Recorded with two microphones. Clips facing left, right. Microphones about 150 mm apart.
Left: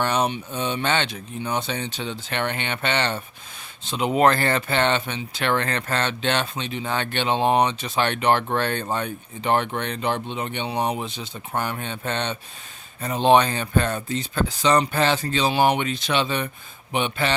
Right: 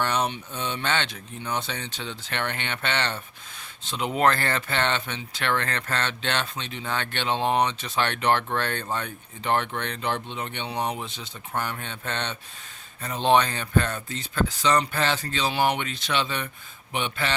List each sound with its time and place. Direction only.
0.0 s speech: 15° left (ahead or behind)
8.8 s speech: 25° left (ahead or behind)
9.0 s speech: 15° left (ahead or behind)